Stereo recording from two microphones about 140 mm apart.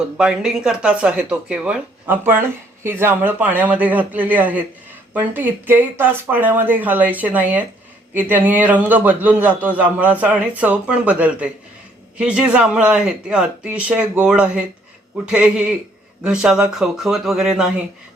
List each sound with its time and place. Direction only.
0.0 s a man's voice: 5° right (ahead or behind)